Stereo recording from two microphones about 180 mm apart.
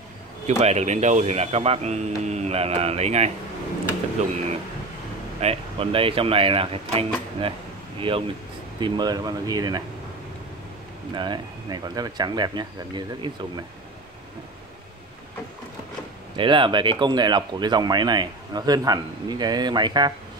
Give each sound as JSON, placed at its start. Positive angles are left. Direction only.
{"t": 0.6, "sound": "speech", "side_deg": -40}
{"t": 5.4, "sound": "speech", "side_deg": -35}
{"t": 11.1, "sound": "speech", "side_deg": -25}
{"t": 16.3, "sound": "speech", "side_deg": -30}